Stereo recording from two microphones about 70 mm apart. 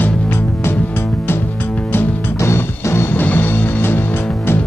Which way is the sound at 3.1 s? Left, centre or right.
Left.